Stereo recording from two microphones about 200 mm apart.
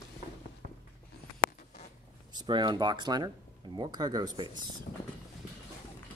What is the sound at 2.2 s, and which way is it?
Speech, 20° right (ahead or behind).